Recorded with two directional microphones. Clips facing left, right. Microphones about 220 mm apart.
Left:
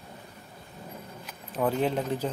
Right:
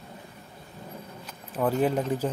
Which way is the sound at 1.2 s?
Centre (ahead or behind).